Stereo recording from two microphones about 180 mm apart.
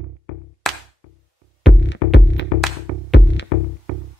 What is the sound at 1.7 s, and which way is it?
Music, 80° left.